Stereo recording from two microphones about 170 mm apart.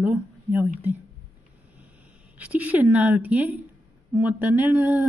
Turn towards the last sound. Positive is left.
turn(degrees=-10)  # may be behind; listen again after turning